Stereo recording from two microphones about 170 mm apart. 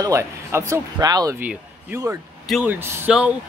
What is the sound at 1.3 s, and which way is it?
Speech, 10° right (ahead or behind).